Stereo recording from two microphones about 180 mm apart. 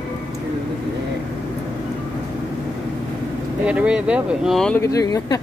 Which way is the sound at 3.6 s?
5° right (ahead or behind).